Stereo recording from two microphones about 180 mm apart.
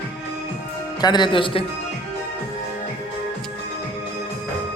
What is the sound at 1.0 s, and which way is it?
Speech, 25° left (ahead or behind).